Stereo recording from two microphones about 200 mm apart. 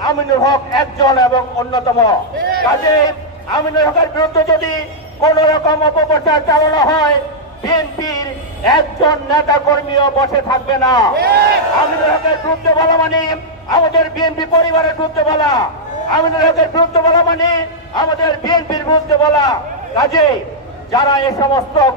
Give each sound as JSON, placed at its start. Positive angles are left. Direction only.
{"t": 0.0, "sound": "a man's voice", "side_deg": 20}
{"t": 3.5, "sound": "a man's voice", "side_deg": 20}
{"t": 11.1, "sound": "speech", "side_deg": -55}
{"t": 12.6, "sound": "a man's voice", "side_deg": 20}